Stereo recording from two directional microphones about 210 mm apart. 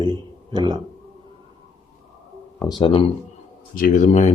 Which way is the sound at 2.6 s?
20° left (ahead or behind).